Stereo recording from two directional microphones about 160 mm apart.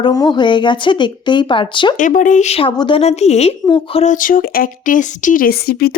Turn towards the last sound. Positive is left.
turn(degrees=70)  # may be behind; listen again after turning